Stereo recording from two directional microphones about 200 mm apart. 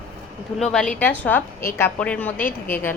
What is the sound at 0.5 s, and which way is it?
A woman's voice, centre (ahead or behind).